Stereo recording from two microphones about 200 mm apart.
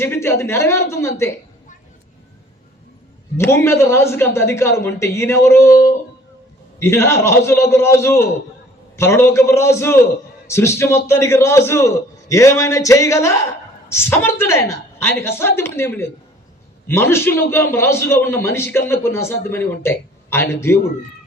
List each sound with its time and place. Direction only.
0.0 s a man's voice: 10° left (ahead or behind)
3.3 s a man's voice: 10° left (ahead or behind)